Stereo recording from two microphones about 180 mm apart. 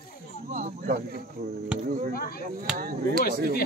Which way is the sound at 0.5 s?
45° right (ahead or behind).